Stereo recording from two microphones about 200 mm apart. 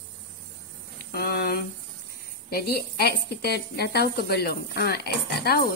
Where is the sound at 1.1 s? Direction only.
50° left (ahead or behind).